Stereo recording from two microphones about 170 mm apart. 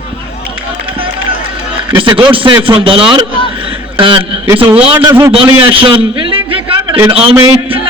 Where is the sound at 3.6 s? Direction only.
30° right (ahead or behind).